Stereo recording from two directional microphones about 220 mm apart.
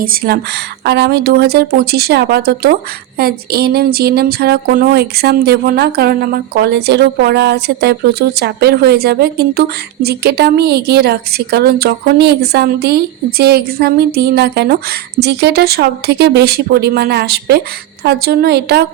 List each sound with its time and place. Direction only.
0.0 s speech: 40° right (ahead or behind)